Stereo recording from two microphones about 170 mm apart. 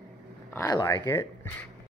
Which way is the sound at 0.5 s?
25° left (ahead or behind).